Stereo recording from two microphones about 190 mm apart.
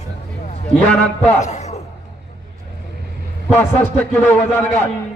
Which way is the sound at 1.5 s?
35° left (ahead or behind).